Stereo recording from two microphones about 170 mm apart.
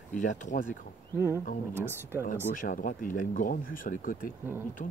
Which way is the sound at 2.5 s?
50° left (ahead or behind).